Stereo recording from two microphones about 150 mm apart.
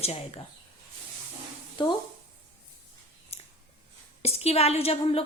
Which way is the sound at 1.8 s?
30° left (ahead or behind).